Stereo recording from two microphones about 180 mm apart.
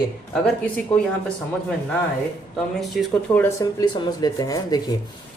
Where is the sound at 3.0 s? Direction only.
Centre (ahead or behind).